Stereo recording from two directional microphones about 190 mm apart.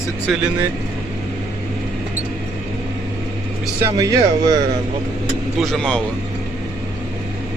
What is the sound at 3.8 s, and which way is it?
Speech, 15° right (ahead or behind).